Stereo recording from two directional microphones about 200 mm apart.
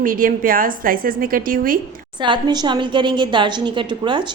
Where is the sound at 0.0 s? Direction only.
45° right (ahead or behind).